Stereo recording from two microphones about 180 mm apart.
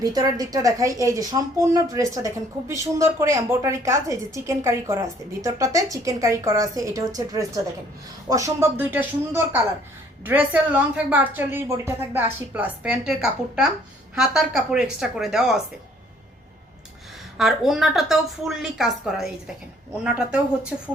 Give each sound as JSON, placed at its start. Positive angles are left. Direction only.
{"t": 0.0, "sound": "a woman's voice", "side_deg": -20}
{"t": 17.3, "sound": "a woman's voice", "side_deg": 0}